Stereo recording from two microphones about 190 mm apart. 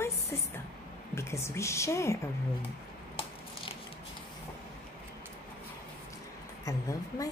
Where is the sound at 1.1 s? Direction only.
15° left (ahead or behind).